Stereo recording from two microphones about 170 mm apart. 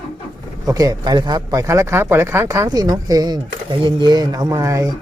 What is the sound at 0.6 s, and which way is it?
Speech, 20° right (ahead or behind).